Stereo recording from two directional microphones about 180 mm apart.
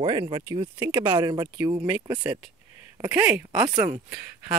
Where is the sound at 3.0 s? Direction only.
10° right (ahead or behind).